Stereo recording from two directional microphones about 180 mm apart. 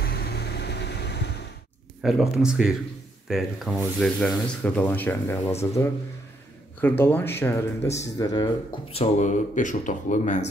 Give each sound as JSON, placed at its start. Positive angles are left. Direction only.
{"t": 0.0, "sound": "vehicle", "side_deg": 60}
{"t": 2.0, "sound": "speech", "side_deg": 0}
{"t": 8.9, "sound": "speech", "side_deg": 40}